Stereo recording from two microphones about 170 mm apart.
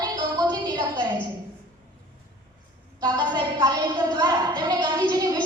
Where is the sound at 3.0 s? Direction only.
25° right (ahead or behind).